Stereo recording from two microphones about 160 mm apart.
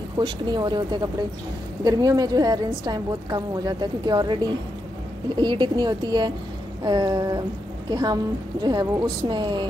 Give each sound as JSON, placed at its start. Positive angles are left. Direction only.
{"t": 0.2, "sound": "a woman's voice", "side_deg": -30}